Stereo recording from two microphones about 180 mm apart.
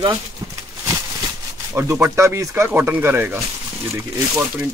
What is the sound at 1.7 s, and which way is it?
Speech, 10° right (ahead or behind).